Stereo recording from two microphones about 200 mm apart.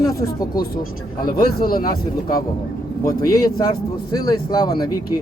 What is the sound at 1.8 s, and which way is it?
Speech, 20° left (ahead or behind).